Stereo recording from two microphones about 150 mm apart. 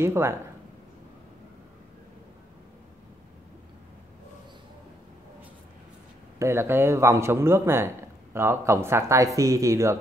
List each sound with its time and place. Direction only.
0.0 s a man's voice: 15° right (ahead or behind)
6.4 s a man's voice: 15° right (ahead or behind)